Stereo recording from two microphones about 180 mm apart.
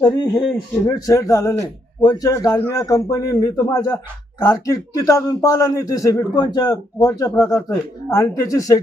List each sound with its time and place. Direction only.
0.0 s a man's voice: 20° left (ahead or behind)